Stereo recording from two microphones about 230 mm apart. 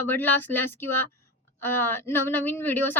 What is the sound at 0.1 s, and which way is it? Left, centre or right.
A woman's voice, centre.